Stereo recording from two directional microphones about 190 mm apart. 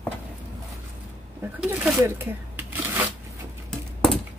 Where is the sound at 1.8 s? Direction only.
10° right (ahead or behind).